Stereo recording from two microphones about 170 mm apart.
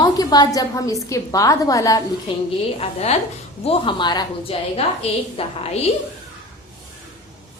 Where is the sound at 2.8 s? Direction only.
40° left (ahead or behind).